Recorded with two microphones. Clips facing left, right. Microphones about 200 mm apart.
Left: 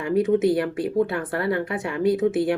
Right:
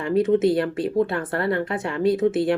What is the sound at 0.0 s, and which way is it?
A woman's voice, 15° left (ahead or behind).